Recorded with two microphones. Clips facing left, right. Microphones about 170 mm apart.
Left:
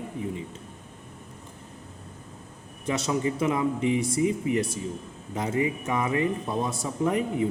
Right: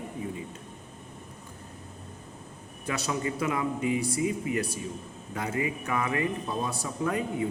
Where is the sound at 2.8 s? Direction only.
25° left (ahead or behind).